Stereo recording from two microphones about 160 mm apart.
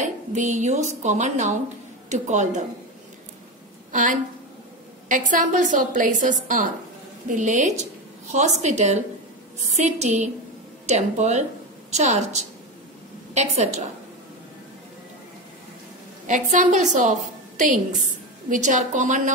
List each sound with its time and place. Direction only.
0.0 s a woman's voice: 50° right (ahead or behind)
3.9 s a woman's voice: 55° right (ahead or behind)
16.3 s a woman's voice: 50° right (ahead or behind)